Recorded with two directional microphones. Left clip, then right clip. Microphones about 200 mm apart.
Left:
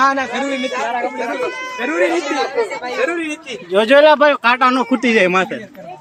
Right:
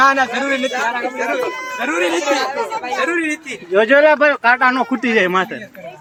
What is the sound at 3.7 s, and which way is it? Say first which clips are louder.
Speech: left 1 dB; 15° left (ahead or behind).